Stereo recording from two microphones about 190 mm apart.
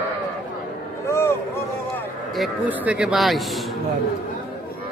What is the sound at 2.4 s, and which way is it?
Speech, 5° right (ahead or behind).